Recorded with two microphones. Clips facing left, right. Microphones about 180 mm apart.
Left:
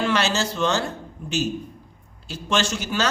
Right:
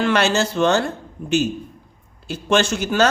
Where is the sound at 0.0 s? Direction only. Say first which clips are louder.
Right 4 dB; 55° right (ahead or behind).